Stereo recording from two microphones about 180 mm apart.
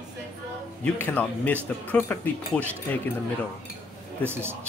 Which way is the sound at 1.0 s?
10° left (ahead or behind).